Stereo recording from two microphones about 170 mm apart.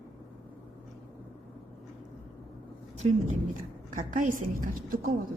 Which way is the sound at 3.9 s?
50° right (ahead or behind).